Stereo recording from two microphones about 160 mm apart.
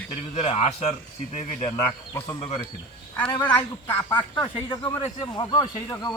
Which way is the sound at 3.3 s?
10° left (ahead or behind).